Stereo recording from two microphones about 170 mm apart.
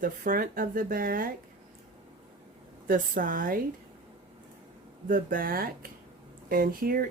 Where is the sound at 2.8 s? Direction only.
55° right (ahead or behind).